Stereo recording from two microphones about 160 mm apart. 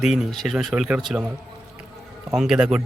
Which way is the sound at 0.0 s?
Centre (ahead or behind).